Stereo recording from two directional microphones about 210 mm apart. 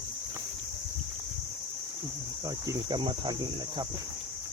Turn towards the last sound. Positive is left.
turn(degrees=-20)  # may be behind; listen again after turning